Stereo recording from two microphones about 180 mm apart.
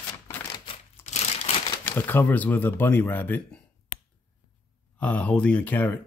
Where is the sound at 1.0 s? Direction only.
35° left (ahead or behind).